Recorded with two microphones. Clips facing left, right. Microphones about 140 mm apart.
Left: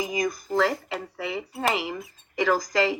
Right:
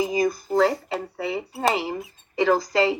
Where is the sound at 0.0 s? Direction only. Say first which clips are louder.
Right 5 dB; 30° right (ahead or behind).